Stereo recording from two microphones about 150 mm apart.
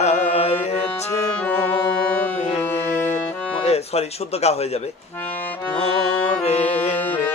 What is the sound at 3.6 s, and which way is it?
Speech, 45° left (ahead or behind).